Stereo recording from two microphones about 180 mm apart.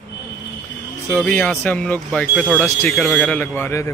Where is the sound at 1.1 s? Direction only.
5° left (ahead or behind).